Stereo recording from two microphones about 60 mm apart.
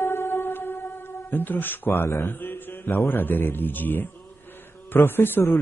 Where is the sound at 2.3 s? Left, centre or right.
Left.